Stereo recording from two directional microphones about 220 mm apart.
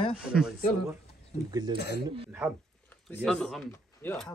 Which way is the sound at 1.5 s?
20° right (ahead or behind).